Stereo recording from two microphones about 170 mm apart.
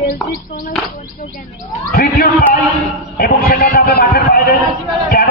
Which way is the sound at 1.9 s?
60° left (ahead or behind).